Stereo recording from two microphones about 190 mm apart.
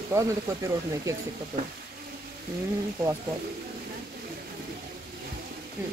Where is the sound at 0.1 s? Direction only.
15° right (ahead or behind).